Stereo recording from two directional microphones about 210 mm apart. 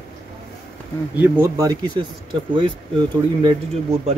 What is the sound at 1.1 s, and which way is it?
Speech, 10° right (ahead or behind).